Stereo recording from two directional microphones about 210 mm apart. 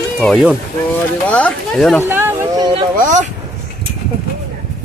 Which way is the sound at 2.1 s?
10° right (ahead or behind).